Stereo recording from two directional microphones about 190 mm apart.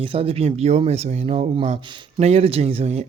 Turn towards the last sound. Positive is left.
turn(degrees=-30)  # may be behind; listen again after turning